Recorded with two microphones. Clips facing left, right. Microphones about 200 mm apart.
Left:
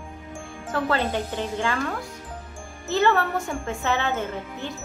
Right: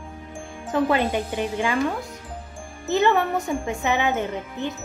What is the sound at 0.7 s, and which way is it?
Speech, 15° right (ahead or behind).